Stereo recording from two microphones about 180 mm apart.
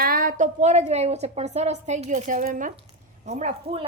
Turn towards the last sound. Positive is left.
turn(degrees=-40)  # may be behind; listen again after turning